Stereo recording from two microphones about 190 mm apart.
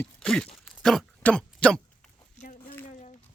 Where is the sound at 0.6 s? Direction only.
Centre (ahead or behind).